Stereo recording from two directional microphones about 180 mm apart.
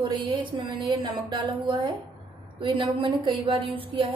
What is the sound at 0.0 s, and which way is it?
A woman's voice, 25° right (ahead or behind).